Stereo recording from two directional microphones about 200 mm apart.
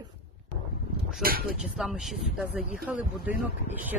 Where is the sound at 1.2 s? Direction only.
50° right (ahead or behind).